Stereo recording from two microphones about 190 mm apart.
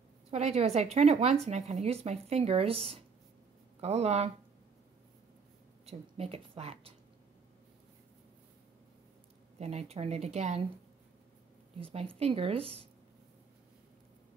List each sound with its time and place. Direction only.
0.3 s a woman's voice: 35° right (ahead or behind)
5.9 s a woman's voice: 35° right (ahead or behind)
9.6 s a woman's voice: 35° right (ahead or behind)
11.8 s a woman's voice: 30° right (ahead or behind)